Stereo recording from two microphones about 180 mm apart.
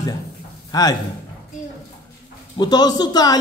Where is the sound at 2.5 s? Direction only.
20° left (ahead or behind).